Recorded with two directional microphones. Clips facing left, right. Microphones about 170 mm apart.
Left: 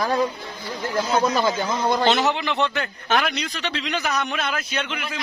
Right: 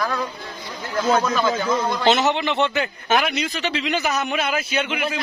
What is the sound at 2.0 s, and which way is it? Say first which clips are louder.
A man's voice: right 2 dB; centre (ahead or behind).